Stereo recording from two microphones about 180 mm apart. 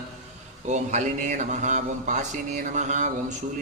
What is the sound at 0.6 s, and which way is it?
Mantra, 40° right (ahead or behind).